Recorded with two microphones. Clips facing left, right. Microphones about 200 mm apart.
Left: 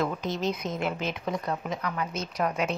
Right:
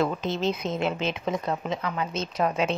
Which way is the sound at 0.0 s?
25° right (ahead or behind).